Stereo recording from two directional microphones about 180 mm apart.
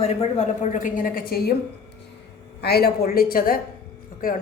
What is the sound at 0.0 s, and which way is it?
A woman's voice, 40° left (ahead or behind).